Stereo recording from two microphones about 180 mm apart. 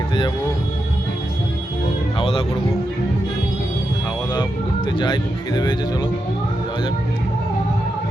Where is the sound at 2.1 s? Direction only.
30° left (ahead or behind).